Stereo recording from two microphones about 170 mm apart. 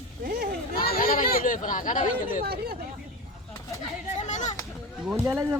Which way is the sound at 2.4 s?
65° right (ahead or behind).